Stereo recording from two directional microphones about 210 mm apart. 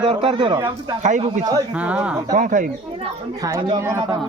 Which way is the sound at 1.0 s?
35° right (ahead or behind).